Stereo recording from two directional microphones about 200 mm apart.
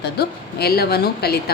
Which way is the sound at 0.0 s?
55° left (ahead or behind).